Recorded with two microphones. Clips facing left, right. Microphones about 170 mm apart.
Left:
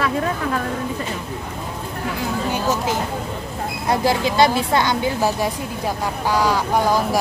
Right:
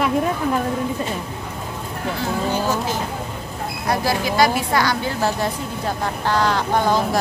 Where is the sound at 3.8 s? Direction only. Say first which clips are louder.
Left 2 dB; 25° left (ahead or behind).